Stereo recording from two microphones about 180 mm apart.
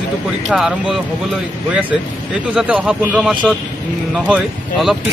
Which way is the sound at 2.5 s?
5° right (ahead or behind).